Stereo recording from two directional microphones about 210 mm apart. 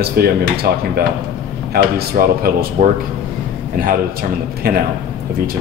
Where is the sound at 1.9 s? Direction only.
45° right (ahead or behind).